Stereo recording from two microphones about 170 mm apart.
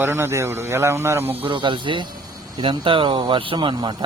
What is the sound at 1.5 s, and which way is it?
Speech, 30° right (ahead or behind).